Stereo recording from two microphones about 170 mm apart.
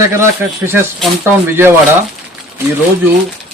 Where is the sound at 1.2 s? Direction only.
15° right (ahead or behind).